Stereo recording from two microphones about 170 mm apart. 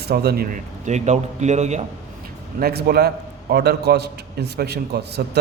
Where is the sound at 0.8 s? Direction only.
45° right (ahead or behind).